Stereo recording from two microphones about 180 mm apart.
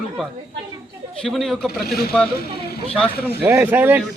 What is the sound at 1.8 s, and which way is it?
Speech, 60° left (ahead or behind).